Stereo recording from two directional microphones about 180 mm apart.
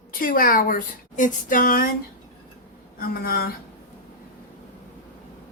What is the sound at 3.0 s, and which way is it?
Speech, 55° left (ahead or behind).